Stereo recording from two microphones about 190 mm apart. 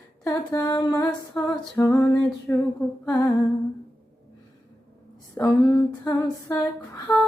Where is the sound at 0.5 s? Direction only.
20° left (ahead or behind).